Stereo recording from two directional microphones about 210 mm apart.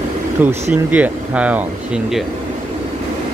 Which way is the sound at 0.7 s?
5° right (ahead or behind).